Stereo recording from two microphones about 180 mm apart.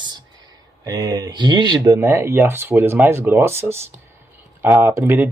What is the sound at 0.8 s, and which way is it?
Speech, 20° right (ahead or behind).